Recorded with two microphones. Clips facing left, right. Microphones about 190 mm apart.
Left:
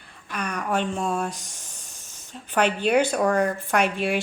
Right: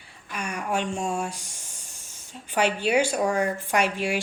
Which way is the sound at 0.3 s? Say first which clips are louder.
Left 2 dB; 10° right (ahead or behind).